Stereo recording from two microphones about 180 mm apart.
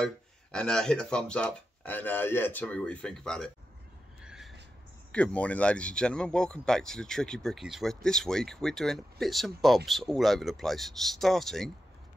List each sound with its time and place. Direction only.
0.0 s speech: 5° left (ahead or behind)
4.2 s a sound: 5° right (ahead or behind)
5.1 s speech: 5° left (ahead or behind)